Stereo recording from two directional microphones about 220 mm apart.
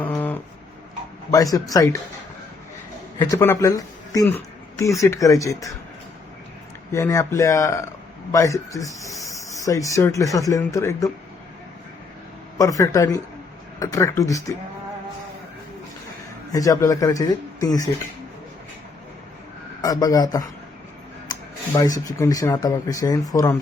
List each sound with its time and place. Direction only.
0.0 s a sound: 10° left (ahead or behind)
1.3 s speech: 15° left (ahead or behind)
3.2 s speech: 15° left (ahead or behind)
6.9 s speech: 15° left (ahead or behind)
12.5 s speech: 15° left (ahead or behind)
16.5 s speech: 15° left (ahead or behind)
19.8 s speech: 15° left (ahead or behind)